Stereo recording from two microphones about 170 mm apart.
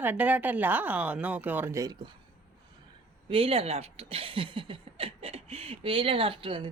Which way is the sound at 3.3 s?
35° right (ahead or behind).